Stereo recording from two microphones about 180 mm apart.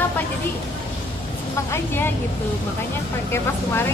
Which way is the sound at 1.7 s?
10° left (ahead or behind).